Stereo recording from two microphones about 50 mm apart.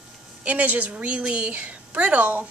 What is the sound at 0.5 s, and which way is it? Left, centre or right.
A woman's voice, right.